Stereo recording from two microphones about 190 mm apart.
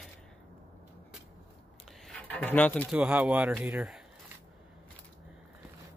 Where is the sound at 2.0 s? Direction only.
5° left (ahead or behind).